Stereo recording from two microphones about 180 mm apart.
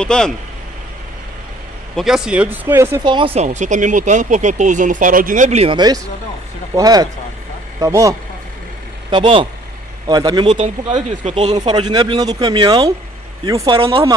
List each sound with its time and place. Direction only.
0.0 s speech: 5° left (ahead or behind)
2.0 s speech: 5° right (ahead or behind)
3.0 s speech: 25° right (ahead or behind)
6.7 s speech: 20° right (ahead or behind)
11.2 s speech: 40° right (ahead or behind); by 13.7 s 20° right (ahead or behind)
13.7 s speech: 30° right (ahead or behind)